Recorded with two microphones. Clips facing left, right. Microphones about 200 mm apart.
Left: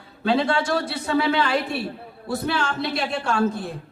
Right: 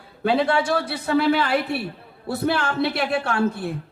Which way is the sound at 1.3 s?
60° right (ahead or behind).